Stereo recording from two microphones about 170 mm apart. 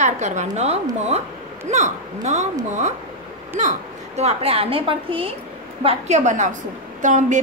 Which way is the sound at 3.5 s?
40° right (ahead or behind).